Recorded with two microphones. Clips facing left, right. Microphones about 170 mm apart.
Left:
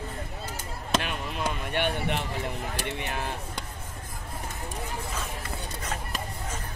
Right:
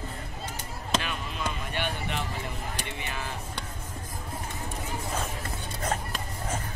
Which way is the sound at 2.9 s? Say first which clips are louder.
Left 4 dB; 55° left (ahead or behind).